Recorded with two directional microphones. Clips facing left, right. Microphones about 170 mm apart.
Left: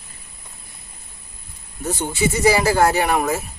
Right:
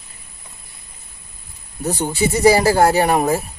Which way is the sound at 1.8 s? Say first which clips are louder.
Right 2 dB; 35° right (ahead or behind).